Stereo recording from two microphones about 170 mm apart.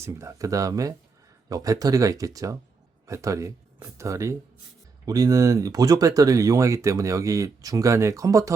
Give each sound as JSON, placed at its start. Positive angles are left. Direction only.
{"t": 0.0, "sound": "speech", "side_deg": -15}